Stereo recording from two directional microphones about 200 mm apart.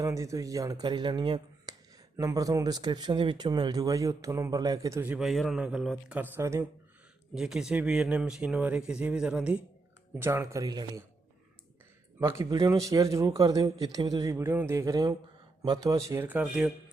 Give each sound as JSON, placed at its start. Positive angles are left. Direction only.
{"t": 0.0, "sound": "speech", "side_deg": -15}
{"t": 12.2, "sound": "speech", "side_deg": -15}